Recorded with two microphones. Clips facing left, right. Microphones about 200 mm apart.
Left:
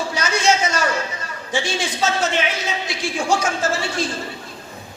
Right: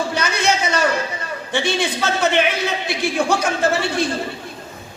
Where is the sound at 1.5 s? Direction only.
60° right (ahead or behind).